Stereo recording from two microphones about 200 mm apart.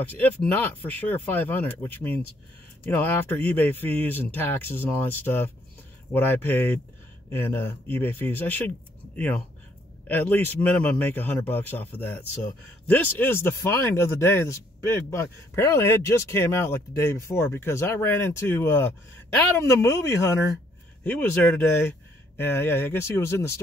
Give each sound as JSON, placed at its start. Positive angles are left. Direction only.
{"t": 0.0, "sound": "speech", "side_deg": 10}